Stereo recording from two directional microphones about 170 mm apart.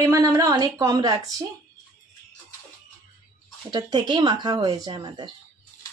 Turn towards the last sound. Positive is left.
turn(degrees=-25)  # may be behind; listen again after turning